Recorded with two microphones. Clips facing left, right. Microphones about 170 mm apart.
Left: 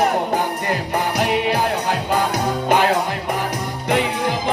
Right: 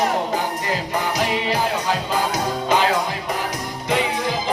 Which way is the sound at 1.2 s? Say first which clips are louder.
Left 3 dB; 60° left (ahead or behind).